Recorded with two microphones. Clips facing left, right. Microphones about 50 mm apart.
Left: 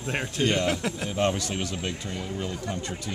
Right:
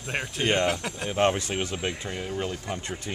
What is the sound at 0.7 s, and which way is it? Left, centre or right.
Speech, centre.